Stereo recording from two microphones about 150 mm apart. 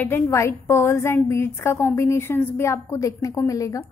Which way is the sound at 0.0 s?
15° left (ahead or behind).